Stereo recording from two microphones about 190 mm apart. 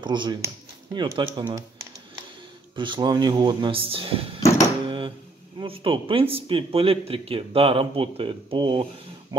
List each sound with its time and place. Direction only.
0.0 s speech: 25° right (ahead or behind)
2.7 s speech: 25° right (ahead or behind)
4.8 s a sound: 25° right (ahead or behind)
5.6 s speech: 25° right (ahead or behind)